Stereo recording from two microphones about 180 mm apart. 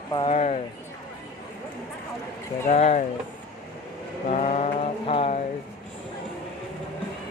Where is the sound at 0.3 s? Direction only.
40° left (ahead or behind).